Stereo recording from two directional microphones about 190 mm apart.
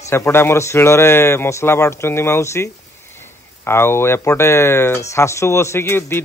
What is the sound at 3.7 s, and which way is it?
A man's voice, 15° left (ahead or behind).